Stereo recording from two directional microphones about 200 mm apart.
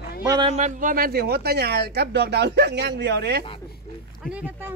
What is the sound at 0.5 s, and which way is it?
Speech, 35° right (ahead or behind).